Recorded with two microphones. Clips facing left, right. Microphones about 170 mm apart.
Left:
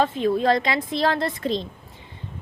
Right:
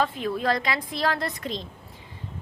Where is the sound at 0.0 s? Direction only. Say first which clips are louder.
Left 5 dB; 25° left (ahead or behind).